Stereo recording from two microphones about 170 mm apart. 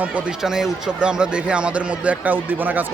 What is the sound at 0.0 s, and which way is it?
Speech, 5° right (ahead or behind).